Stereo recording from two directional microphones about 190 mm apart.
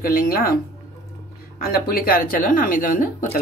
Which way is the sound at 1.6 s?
50° left (ahead or behind).